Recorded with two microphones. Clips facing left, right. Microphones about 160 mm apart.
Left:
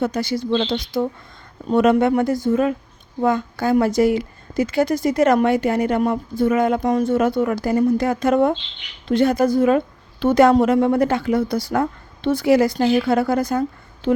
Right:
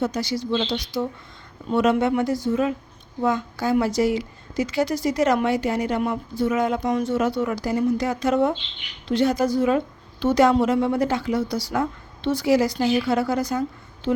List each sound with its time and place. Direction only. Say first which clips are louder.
0.0 s a woman's voice: left 3 dB; 55° left (ahead or behind)